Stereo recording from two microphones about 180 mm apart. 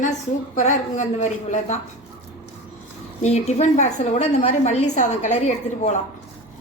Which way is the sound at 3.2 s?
40° left (ahead or behind).